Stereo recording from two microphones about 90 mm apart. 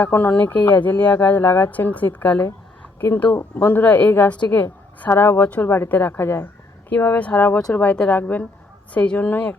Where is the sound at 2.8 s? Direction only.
20° left (ahead or behind).